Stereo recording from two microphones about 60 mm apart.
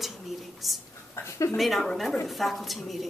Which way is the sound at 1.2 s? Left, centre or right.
Left.